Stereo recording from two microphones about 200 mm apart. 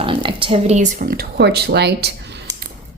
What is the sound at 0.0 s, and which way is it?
A woman's voice, 25° right (ahead or behind).